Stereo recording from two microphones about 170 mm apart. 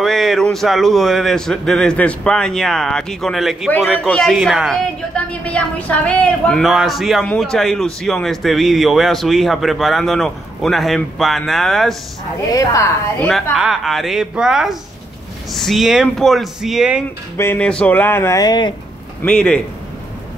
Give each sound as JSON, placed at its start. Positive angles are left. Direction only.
{"t": 0.0, "sound": "a woman's voice", "side_deg": 0}
{"t": 12.5, "sound": "speech", "side_deg": 20}
{"t": 13.3, "sound": "a woman's voice", "side_deg": 0}
{"t": 17.4, "sound": "speech", "side_deg": 10}
{"t": 19.2, "sound": "a woman's voice", "side_deg": 5}